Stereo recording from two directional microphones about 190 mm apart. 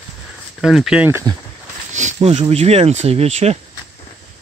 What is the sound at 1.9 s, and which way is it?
Speech, 40° right (ahead or behind).